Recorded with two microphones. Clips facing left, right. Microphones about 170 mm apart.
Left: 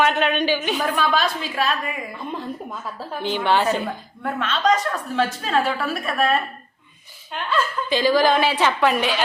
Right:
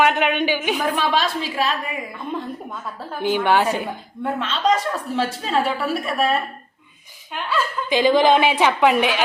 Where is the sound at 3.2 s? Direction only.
10° right (ahead or behind).